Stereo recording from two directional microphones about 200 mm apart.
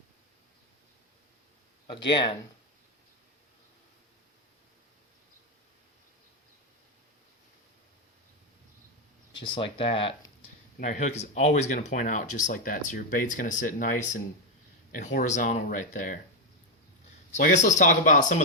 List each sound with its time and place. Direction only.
1.9 s speech: 25° left (ahead or behind)
9.4 s speech: 25° left (ahead or behind)
17.3 s speech: 35° left (ahead or behind)